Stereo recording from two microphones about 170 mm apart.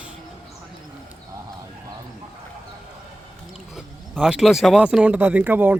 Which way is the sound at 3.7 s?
5° right (ahead or behind).